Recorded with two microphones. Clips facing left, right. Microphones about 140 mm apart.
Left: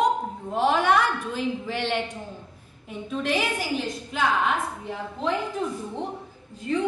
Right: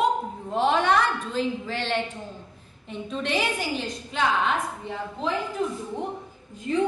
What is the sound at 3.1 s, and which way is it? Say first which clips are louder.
A woman's voice: left 1 dB; 5° left (ahead or behind).